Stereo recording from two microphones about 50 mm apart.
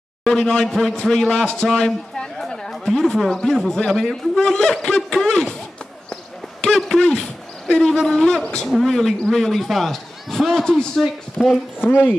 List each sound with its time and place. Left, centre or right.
0.2 s a man's voice: centre
6.6 s a sound: centre
8.0 s a man's voice: centre
8.6 s a man's voice: centre
8.9 s a man's voice: centre
11.8 s speech: left